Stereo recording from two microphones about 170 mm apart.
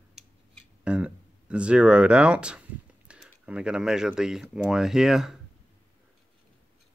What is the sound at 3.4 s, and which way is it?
Speech, 5° right (ahead or behind).